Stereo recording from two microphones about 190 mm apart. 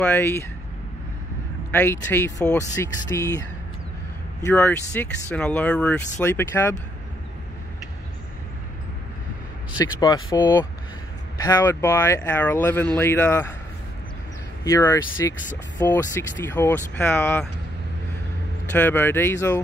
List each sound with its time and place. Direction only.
0.0 s speech: 10° left (ahead or behind)
1.7 s speech: 10° left (ahead or behind)
9.8 s speech: 20° left (ahead or behind)
14.6 s speech: 15° left (ahead or behind)
18.7 s speech: 10° left (ahead or behind)